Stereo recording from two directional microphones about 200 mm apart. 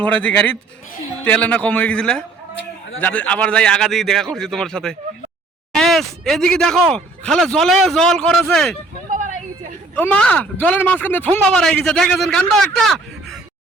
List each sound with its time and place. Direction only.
0.0 s a man's voice: 5° left (ahead or behind)
9.1 s a sound: 40° right (ahead or behind)
9.9 s speech: 5° left (ahead or behind)